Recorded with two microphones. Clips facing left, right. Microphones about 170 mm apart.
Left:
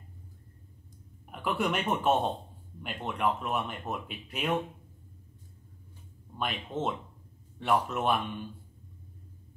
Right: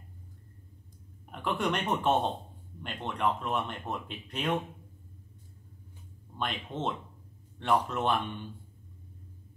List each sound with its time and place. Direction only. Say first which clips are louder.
1.3 s speech: left 1 dB; 5° left (ahead or behind)
6.3 s speech: left 1 dB; 5° left (ahead or behind)